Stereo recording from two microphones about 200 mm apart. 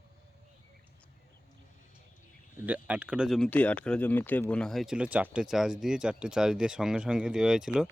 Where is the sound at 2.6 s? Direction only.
5° right (ahead or behind).